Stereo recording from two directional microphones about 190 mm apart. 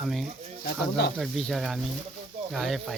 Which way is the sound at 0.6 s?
55° left (ahead or behind).